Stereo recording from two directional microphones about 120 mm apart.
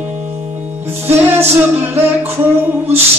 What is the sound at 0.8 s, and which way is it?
Music, 20° right (ahead or behind).